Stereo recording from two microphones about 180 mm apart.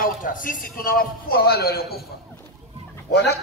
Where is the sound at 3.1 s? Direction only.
65° left (ahead or behind).